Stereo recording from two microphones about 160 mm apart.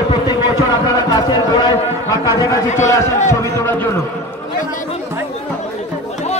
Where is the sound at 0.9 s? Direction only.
25° left (ahead or behind).